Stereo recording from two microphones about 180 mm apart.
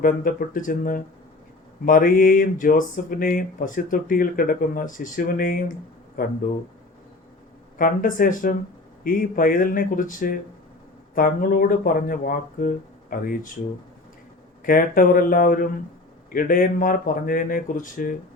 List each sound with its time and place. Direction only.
0.0 s speech: 50° left (ahead or behind)
7.8 s speech: 50° left (ahead or behind)
14.6 s speech: 50° left (ahead or behind)